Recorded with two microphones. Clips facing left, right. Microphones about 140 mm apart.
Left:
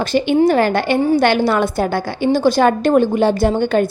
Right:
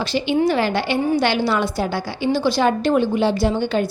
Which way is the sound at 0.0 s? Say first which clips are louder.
Left 5 dB; 50° left (ahead or behind).